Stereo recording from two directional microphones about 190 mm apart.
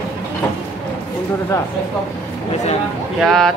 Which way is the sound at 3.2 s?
Centre (ahead or behind).